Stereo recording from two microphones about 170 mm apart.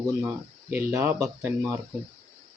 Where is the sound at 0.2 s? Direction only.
15° right (ahead or behind).